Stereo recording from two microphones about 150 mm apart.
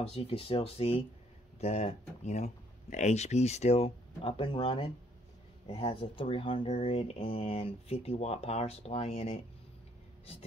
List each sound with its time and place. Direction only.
0.0 s speech: 40° left (ahead or behind)